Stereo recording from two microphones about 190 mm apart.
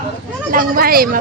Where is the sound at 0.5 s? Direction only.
50° right (ahead or behind).